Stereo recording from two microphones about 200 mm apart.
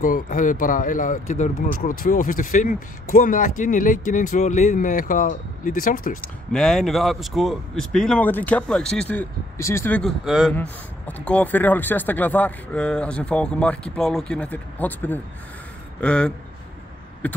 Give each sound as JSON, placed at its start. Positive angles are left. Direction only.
{"t": 0.0, "sound": "speech", "side_deg": 40}
{"t": 6.2, "sound": "speech", "side_deg": 5}